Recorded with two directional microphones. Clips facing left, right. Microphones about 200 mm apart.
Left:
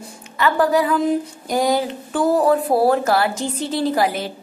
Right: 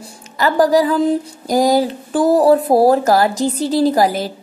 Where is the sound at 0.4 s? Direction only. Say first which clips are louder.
Right 4 dB; 35° right (ahead or behind).